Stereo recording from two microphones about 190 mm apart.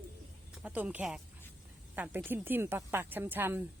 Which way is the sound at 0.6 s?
5° right (ahead or behind).